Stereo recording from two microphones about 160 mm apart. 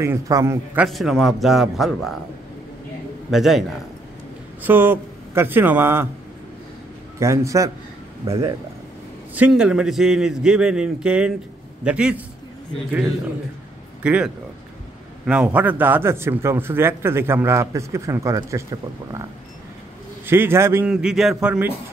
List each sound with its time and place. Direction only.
0.0 s a man's voice: 20° right (ahead or behind)
0.7 s a man's voice: centre (ahead or behind)
3.3 s a man's voice: centre (ahead or behind)
4.6 s a man's voice: 10° right (ahead or behind)
7.2 s a man's voice: 20° right (ahead or behind)
9.3 s a man's voice: 5° right (ahead or behind)
14.0 s a man's voice: 10° right (ahead or behind)
20.2 s a man's voice: 15° right (ahead or behind)
20.9 s a man's voice: 5° right (ahead or behind)